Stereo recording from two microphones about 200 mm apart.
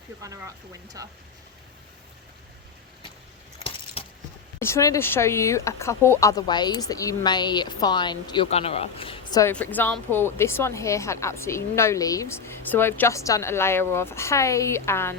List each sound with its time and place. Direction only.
0.2 s speech: 15° right (ahead or behind)
3.6 s coin: 25° left (ahead or behind)
4.6 s speech: 15° left (ahead or behind)
9.4 s a woman's voice: 10° left (ahead or behind)